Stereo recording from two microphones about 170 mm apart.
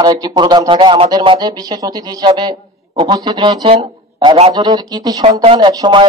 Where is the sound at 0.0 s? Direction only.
25° right (ahead or behind).